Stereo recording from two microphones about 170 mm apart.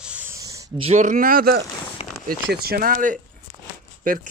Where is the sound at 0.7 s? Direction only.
40° right (ahead or behind).